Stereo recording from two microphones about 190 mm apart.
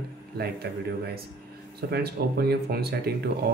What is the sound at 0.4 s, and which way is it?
Speech, 55° right (ahead or behind).